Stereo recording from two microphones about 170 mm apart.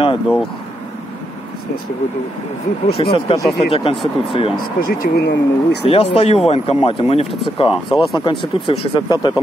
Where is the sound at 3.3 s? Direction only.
35° left (ahead or behind).